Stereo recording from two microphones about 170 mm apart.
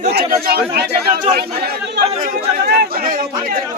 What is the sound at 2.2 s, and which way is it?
Speech, 65° right (ahead or behind).